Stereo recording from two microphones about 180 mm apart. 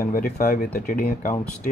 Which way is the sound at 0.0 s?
55° left (ahead or behind).